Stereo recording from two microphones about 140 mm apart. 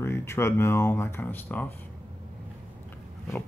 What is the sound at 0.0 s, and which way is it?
Speech, 15° left (ahead or behind).